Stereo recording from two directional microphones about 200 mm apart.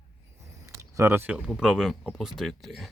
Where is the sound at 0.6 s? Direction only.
15° right (ahead or behind).